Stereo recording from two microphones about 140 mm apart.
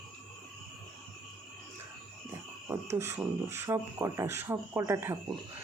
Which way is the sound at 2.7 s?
20° right (ahead or behind).